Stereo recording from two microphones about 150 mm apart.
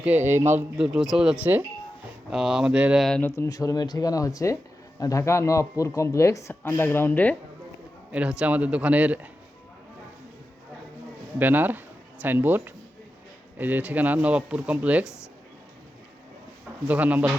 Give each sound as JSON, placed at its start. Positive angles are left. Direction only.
{"t": 0.4, "sound": "speech", "side_deg": -10}
{"t": 3.2, "sound": "speech", "side_deg": 15}
{"t": 8.1, "sound": "speech", "side_deg": -5}
{"t": 11.3, "sound": "speech", "side_deg": -10}
{"t": 16.9, "sound": "speech", "side_deg": -10}